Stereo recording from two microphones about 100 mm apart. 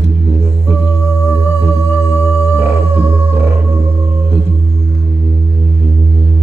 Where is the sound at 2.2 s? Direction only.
25° right (ahead or behind).